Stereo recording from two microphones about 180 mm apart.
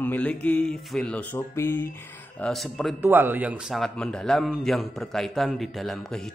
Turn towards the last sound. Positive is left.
turn(degrees=0)  # may be behind; listen again after turning